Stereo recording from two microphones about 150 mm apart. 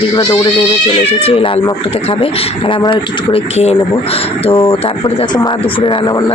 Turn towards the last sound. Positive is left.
turn(degrees=30)  # may be behind; listen again after turning